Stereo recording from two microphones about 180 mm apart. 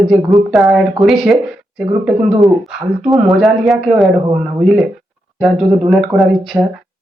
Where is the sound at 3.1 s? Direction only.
Centre (ahead or behind).